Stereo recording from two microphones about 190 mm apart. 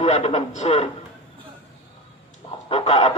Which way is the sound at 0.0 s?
35° left (ahead or behind).